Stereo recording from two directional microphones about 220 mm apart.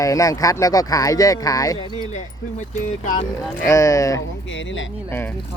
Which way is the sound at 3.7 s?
15° left (ahead or behind).